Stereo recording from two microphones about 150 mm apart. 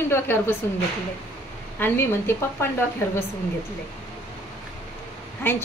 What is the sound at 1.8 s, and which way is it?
Speech, 15° left (ahead or behind).